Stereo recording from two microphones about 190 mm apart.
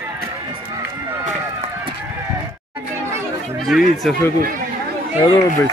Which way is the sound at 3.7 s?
Centre (ahead or behind).